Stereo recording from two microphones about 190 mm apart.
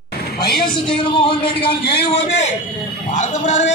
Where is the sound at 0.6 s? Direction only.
25° left (ahead or behind).